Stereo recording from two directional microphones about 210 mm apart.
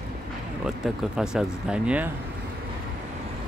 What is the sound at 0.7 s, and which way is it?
Speech, centre (ahead or behind).